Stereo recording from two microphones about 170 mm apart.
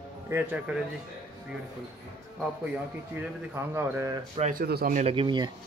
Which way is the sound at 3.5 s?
15° right (ahead or behind).